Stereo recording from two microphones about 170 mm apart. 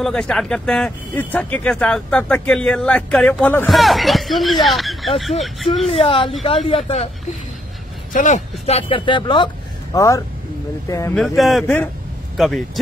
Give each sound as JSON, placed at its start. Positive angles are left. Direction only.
{"t": 0.0, "sound": "speech", "side_deg": 5}
{"t": 5.9, "sound": "speech", "side_deg": 35}
{"t": 8.1, "sound": "speech", "side_deg": 45}
{"t": 11.1, "sound": "speech", "side_deg": 0}
{"t": 11.6, "sound": "speech", "side_deg": 10}